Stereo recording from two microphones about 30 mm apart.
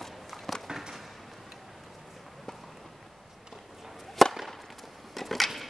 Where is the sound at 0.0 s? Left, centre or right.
Centre.